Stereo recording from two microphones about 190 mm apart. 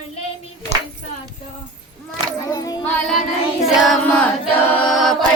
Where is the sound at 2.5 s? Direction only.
20° left (ahead or behind).